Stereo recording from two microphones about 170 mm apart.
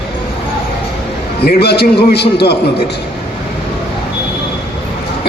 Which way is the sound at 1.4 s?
70° left (ahead or behind).